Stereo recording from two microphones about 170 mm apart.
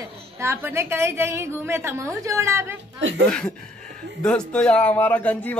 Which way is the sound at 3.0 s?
90° right.